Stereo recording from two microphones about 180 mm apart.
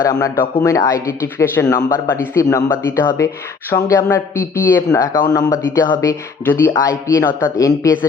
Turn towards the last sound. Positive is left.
turn(degrees=20)  # may be behind; listen again after turning